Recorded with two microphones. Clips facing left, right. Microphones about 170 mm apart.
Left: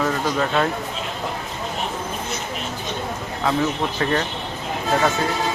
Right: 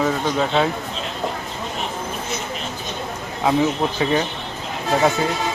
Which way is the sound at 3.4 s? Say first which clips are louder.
Right 3 dB; 15° right (ahead or behind).